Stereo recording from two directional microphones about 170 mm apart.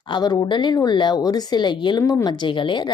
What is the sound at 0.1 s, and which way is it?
A woman's voice, 25° left (ahead or behind).